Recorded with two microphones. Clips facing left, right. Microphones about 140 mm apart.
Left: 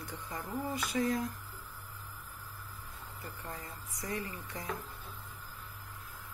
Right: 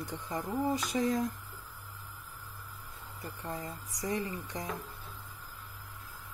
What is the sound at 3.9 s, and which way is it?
Speech, 25° right (ahead or behind).